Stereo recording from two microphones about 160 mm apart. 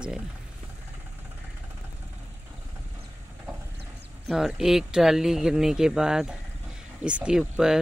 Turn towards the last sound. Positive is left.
turn(degrees=-5)  # may be behind; listen again after turning